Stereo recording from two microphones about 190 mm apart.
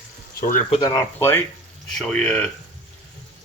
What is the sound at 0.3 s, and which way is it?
Speech, 45° left (ahead or behind).